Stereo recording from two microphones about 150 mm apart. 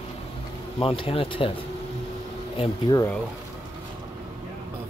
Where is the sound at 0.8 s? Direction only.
35° left (ahead or behind).